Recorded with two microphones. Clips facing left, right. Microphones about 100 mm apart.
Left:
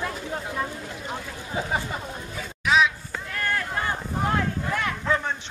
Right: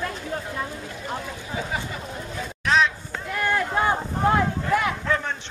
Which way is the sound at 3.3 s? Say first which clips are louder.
Right 5 dB; 15° right (ahead or behind).